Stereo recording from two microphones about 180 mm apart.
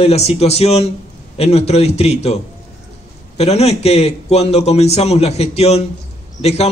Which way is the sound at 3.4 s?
35° left (ahead or behind).